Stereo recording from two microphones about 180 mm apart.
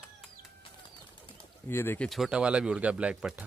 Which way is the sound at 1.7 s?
10° left (ahead or behind).